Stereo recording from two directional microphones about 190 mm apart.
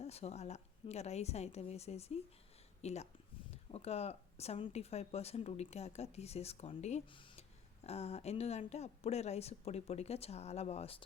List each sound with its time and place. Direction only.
0.0 s speech: 35° left (ahead or behind)